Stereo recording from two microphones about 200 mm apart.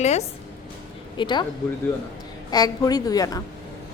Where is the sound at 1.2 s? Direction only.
20° left (ahead or behind).